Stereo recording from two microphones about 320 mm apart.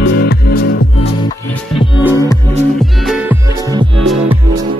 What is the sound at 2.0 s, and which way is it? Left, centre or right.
Music, centre.